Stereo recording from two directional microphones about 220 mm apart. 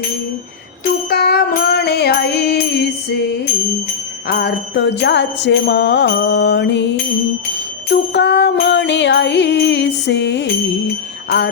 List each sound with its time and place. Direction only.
1.1 s music: 45° left (ahead or behind)
4.3 s music: 50° left (ahead or behind)
7.9 s music: 50° left (ahead or behind)